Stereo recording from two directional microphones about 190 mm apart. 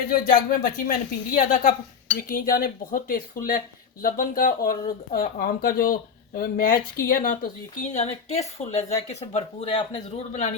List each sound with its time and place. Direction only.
0.1 s speech: 45° left (ahead or behind)